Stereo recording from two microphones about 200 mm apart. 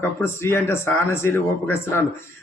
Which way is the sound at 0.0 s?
10° left (ahead or behind).